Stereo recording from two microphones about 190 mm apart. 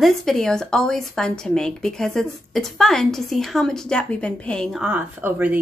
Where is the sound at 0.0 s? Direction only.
Centre (ahead or behind).